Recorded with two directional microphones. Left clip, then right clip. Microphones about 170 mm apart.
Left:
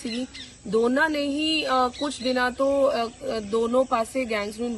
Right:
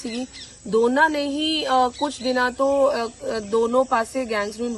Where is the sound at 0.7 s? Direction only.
15° right (ahead or behind).